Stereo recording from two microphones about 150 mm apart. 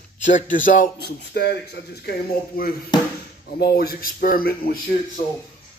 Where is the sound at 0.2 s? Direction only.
60° left (ahead or behind); by 2.7 s 85° left.